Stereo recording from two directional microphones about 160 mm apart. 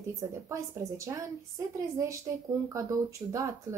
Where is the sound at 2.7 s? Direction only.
20° right (ahead or behind).